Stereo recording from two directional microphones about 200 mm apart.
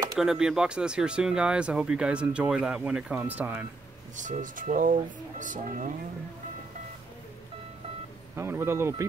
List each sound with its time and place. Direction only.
0.1 s speech: 5° right (ahead or behind)
4.2 s speech: 40° right (ahead or behind)
8.4 s speech: 15° right (ahead or behind)